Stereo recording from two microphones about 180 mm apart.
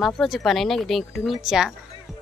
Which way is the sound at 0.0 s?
Centre (ahead or behind).